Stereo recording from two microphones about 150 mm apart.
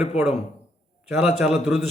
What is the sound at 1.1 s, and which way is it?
Speech, 5° right (ahead or behind).